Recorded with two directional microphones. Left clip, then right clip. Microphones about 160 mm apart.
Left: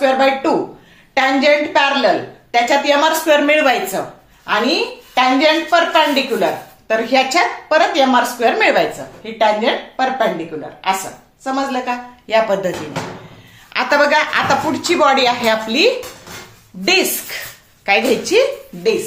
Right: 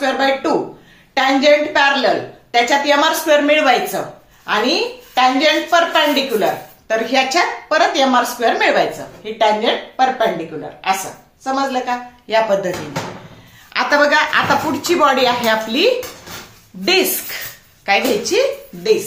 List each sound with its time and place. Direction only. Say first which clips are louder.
0.0 s a woman's voice: left 3 dB; 30° left (ahead or behind)
1.1 s a sound: even; 30° left (ahead or behind)
1.7 s a woman's voice: even; 30° left (ahead or behind)
11.4 s a woman's voice: right 1 dB; 30° left (ahead or behind)
13.7 s a woman's voice: even; 30° left (ahead or behind)
14.5 s a woman's voice: even; 10° left (ahead or behind)
17.8 s a woman's voice: left 1 dB; 35° left (ahead or behind)